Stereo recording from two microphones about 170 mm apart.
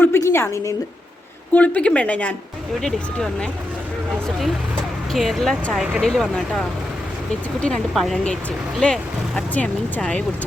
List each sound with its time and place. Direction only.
0.0 s a sound: 15° left (ahead or behind)
1.5 s speech: 10° left (ahead or behind)
5.1 s speech: centre (ahead or behind)